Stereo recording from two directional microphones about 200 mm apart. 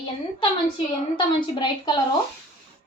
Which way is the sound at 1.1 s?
20° left (ahead or behind).